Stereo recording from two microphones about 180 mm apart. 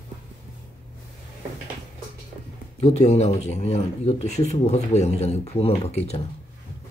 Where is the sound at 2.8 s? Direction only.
40° left (ahead or behind).